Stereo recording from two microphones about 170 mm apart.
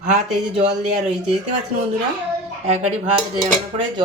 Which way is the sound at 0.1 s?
40° right (ahead or behind).